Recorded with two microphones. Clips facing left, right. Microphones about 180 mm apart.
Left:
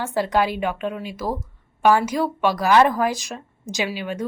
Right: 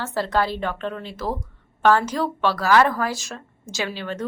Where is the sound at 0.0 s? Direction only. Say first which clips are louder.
Left 2 dB; 15° left (ahead or behind).